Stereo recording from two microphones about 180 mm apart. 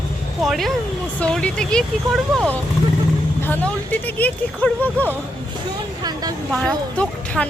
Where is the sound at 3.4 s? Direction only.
10° left (ahead or behind).